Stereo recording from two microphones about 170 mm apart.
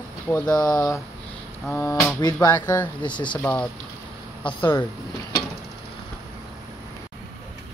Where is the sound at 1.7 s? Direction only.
15° left (ahead or behind).